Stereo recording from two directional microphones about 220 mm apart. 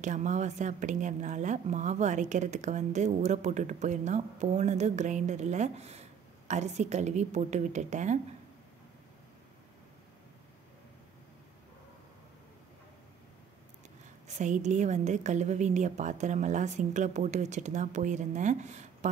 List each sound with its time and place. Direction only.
0.0 s a woman's voice: 35° right (ahead or behind)
14.2 s a woman's voice: 35° right (ahead or behind)